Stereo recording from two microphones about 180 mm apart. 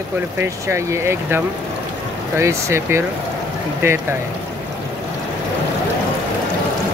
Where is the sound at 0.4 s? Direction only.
15° right (ahead or behind).